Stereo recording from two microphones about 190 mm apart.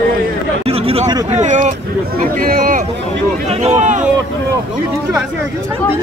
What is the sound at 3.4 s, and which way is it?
Speech, 35° right (ahead or behind).